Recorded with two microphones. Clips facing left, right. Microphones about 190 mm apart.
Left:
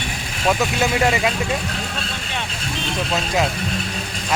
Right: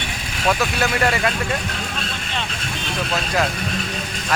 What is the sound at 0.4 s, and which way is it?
Speech, 15° left (ahead or behind).